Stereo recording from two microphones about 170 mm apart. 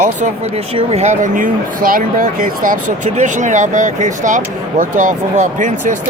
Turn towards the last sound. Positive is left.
turn(degrees=-50)  # may be behind; listen again after turning